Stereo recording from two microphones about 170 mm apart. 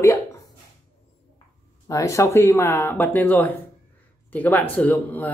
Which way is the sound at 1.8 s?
20° left (ahead or behind).